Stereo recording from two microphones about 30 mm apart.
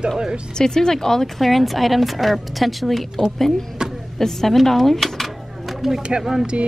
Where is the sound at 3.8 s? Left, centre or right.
Right.